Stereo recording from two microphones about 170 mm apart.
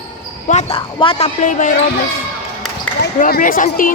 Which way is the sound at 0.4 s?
45° left (ahead or behind).